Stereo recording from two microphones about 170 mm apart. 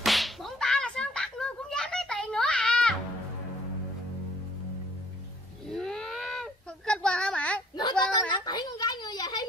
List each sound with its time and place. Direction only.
0.0 s whip: centre (ahead or behind)
5.7 s baby cry: 5° left (ahead or behind)
8.1 s a sound: 25° left (ahead or behind)